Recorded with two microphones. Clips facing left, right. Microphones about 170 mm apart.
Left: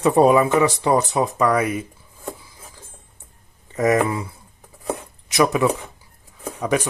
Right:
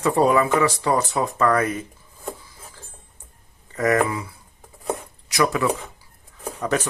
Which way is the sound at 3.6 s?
20° left (ahead or behind).